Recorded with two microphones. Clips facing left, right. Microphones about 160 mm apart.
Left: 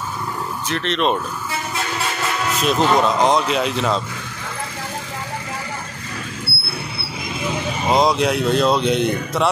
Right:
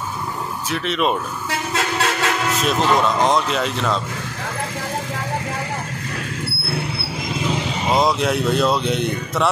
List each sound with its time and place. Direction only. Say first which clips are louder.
0.7 s speech: left 1 dB; 5° right (ahead or behind)
1.5 s train: right 4 dB; 75° right (ahead or behind)
2.6 s speech: left 2 dB; centre (ahead or behind)
7.9 s speech: left 2 dB; centre (ahead or behind)